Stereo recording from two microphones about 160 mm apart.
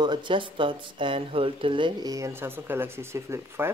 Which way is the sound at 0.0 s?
30° right (ahead or behind).